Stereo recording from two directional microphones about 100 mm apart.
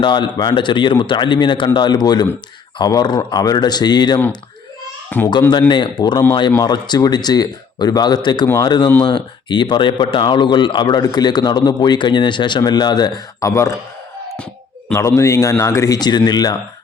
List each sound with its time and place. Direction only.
0.0 s speech: 50° left (ahead or behind)
5.1 s speech: 20° left (ahead or behind)
5.5 s speech: 45° left (ahead or behind); by 13.7 s 30° left (ahead or behind)
14.9 s speech: 30° left (ahead or behind)
16.0 s speech: 45° left (ahead or behind)